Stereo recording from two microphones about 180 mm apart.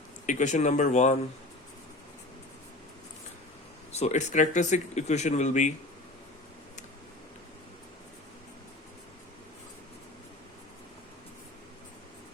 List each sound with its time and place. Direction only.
0.3 s speech: 45° left (ahead or behind)
3.9 s speech: 40° left (ahead or behind)